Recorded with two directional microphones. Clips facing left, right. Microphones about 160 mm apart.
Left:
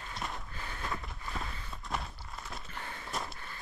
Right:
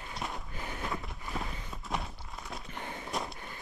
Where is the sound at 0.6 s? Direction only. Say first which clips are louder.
Right 3 dB; 15° right (ahead or behind).